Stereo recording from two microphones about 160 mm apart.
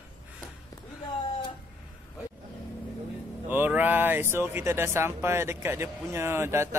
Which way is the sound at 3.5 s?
10° right (ahead or behind).